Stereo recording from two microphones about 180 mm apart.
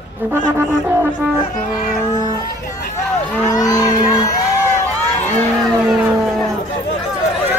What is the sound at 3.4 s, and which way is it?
Speech, 20° left (ahead or behind).